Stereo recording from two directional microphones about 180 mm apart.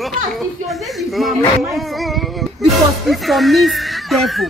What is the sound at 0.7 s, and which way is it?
Speech, centre (ahead or behind).